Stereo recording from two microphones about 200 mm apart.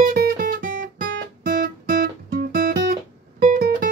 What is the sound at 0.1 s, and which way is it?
Guitar, 50° right (ahead or behind).